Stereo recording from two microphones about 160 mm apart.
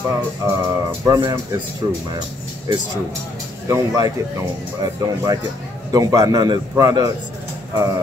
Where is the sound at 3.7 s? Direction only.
20° right (ahead or behind).